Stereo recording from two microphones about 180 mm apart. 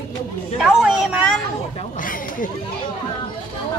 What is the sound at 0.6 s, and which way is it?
Speech, 5° right (ahead or behind).